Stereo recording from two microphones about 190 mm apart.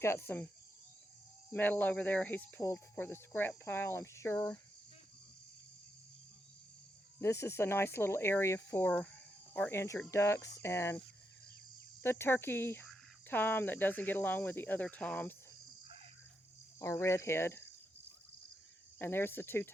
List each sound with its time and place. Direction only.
0.0 s speech: 15° left (ahead or behind)
1.5 s speech: 10° left (ahead or behind)
7.2 s speech: 15° left (ahead or behind)
12.0 s speech: 10° left (ahead or behind)
16.8 s speech: 15° left (ahead or behind)
18.9 s speech: 10° left (ahead or behind)